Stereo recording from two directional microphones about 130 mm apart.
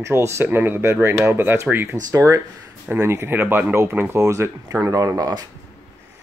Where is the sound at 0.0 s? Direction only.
20° right (ahead or behind).